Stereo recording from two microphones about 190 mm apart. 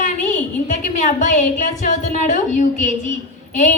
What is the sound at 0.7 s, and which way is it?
A woman's voice, 40° left (ahead or behind).